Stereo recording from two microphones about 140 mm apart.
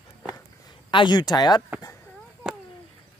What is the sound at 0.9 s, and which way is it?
Speech, 30° left (ahead or behind).